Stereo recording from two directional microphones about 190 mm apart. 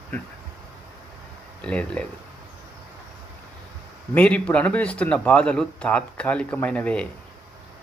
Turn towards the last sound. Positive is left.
turn(degrees=5)  # may be behind; listen again after turning